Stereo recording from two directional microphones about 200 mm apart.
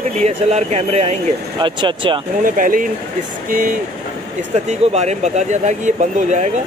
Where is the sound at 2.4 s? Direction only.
45° right (ahead or behind).